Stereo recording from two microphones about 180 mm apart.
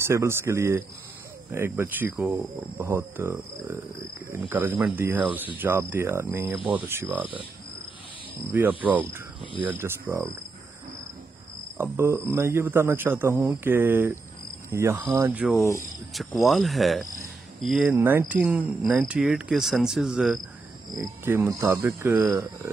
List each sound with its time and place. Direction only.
0.0 s a man's voice: 15° right (ahead or behind)
8.5 s a man's voice: 10° right (ahead or behind)
11.8 s a man's voice: 15° right (ahead or behind)
17.9 s speech: 10° right (ahead or behind)
21.0 s a man's voice: 15° right (ahead or behind)
22.1 s speech: 25° right (ahead or behind)